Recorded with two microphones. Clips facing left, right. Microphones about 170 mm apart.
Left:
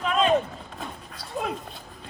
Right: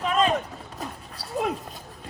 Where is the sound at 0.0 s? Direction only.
Centre (ahead or behind).